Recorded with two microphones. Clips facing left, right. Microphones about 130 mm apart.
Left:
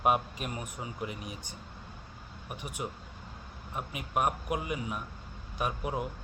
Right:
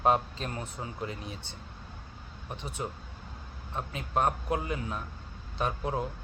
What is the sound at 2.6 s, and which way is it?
Speech, 15° left (ahead or behind).